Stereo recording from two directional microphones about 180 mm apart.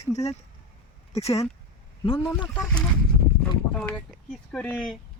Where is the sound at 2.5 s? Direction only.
5° left (ahead or behind).